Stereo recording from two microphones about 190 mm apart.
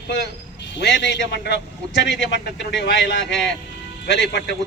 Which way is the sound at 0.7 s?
65° left (ahead or behind).